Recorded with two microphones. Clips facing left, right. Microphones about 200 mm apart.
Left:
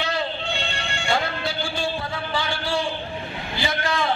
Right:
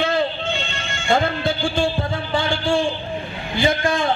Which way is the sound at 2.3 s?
50° right (ahead or behind).